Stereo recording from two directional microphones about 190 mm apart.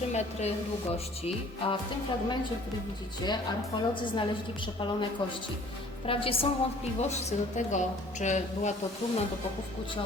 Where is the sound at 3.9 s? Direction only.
25° left (ahead or behind).